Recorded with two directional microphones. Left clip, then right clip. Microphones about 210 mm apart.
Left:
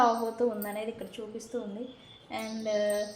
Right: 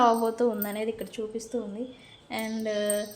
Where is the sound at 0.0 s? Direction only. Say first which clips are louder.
Right 3 dB; 45° right (ahead or behind).